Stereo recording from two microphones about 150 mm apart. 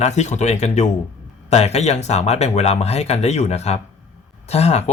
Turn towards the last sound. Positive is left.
turn(degrees=45)  # may be behind; listen again after turning